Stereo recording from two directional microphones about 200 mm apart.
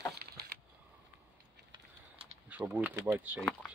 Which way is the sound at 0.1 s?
50° right (ahead or behind).